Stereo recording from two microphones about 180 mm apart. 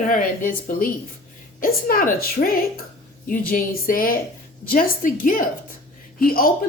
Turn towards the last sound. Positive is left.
turn(degrees=55)  # may be behind; listen again after turning